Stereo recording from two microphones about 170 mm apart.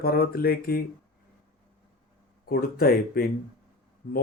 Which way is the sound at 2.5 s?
65° left (ahead or behind).